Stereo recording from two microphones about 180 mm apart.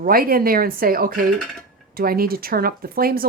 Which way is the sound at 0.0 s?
55° right (ahead or behind).